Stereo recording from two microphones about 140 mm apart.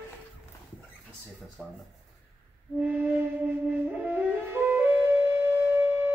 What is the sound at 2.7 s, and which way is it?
Flute, 15° right (ahead or behind).